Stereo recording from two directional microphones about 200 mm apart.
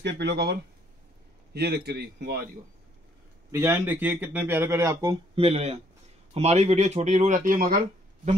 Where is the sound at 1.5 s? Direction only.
55° right (ahead or behind).